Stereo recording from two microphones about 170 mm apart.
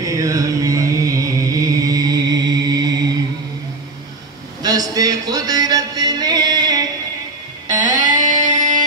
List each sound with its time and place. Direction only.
0.0 s chant: 20° right (ahead or behind)
4.6 s music: 20° right (ahead or behind)
7.9 s music: 50° right (ahead or behind)